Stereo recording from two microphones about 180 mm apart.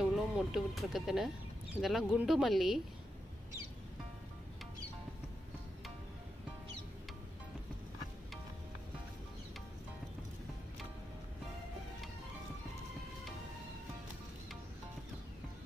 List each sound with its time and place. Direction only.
0.0 s speech: centre (ahead or behind)